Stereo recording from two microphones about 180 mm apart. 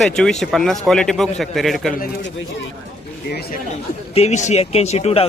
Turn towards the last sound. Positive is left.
turn(degrees=35)  # may be behind; listen again after turning